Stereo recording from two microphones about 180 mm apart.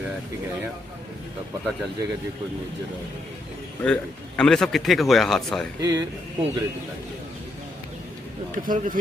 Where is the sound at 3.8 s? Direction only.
5° left (ahead or behind).